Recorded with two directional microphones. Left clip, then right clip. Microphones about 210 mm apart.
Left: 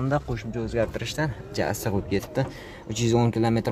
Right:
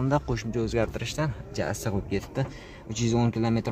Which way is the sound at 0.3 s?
15° right (ahead or behind).